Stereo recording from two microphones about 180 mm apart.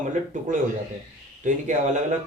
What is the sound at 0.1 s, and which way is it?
A man's voice, 45° right (ahead or behind).